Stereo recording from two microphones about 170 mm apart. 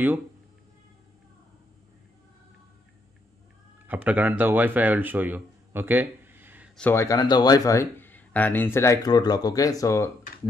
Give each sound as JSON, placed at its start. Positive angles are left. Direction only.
{"t": 3.8, "sound": "speech", "side_deg": -10}
{"t": 6.8, "sound": "speech", "side_deg": 15}